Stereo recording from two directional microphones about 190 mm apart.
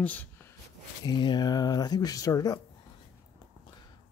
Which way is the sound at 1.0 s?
20° left (ahead or behind).